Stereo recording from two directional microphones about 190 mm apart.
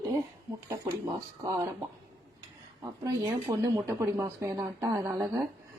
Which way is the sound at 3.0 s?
20° right (ahead or behind).